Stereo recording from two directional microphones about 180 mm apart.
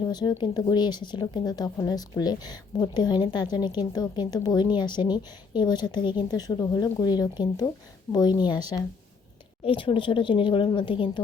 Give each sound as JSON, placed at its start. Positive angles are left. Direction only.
{"t": 0.1, "sound": "a woman's voice", "side_deg": 20}
{"t": 9.6, "sound": "a woman's voice", "side_deg": 30}